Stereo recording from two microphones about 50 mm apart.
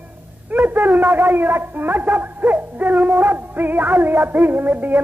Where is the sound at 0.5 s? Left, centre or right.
Right.